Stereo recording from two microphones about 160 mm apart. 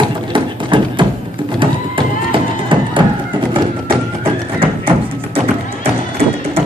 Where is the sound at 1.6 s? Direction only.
30° right (ahead or behind).